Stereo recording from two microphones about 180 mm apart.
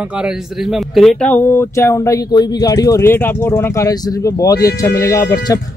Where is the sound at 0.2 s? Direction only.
Centre (ahead or behind).